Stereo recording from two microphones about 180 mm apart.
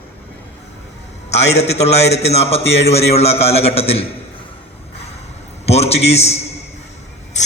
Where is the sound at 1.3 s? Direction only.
35° left (ahead or behind).